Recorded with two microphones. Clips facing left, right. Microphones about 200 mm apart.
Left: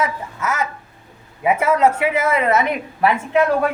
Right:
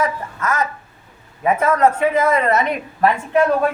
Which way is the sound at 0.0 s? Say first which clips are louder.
Right 1 dB; 10° left (ahead or behind).